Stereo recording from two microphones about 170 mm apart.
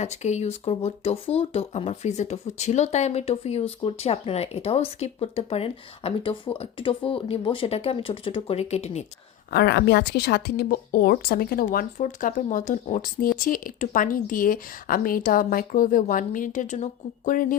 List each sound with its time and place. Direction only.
0.0 s speech: 40° left (ahead or behind)
9.5 s a woman's voice: 75° left (ahead or behind); by 17.6 s 50° left (ahead or behind)